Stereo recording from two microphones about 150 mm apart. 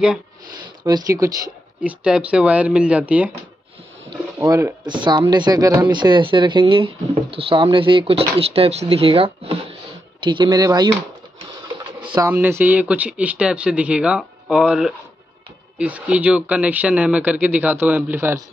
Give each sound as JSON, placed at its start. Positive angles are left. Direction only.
{"t": 0.8, "sound": "speech", "side_deg": -25}
{"t": 1.8, "sound": "speech", "side_deg": -10}
{"t": 4.4, "sound": "speech", "side_deg": -20}
{"t": 4.8, "sound": "speech", "side_deg": -30}
{"t": 12.0, "sound": "pigeon", "side_deg": -30}
{"t": 12.3, "sound": "speech", "side_deg": -15}